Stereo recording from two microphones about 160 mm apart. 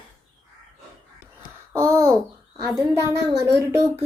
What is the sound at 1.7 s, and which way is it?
Speech, 20° right (ahead or behind).